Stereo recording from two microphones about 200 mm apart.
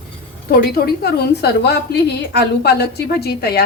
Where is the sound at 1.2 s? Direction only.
55° left (ahead or behind).